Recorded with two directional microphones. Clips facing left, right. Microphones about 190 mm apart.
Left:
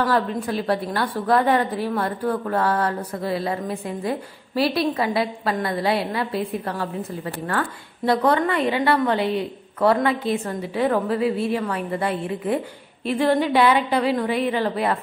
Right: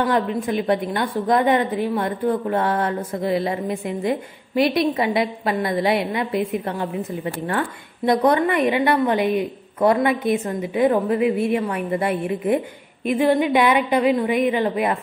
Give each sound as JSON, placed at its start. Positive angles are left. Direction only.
{"t": 0.0, "sound": "a woman's voice", "side_deg": -20}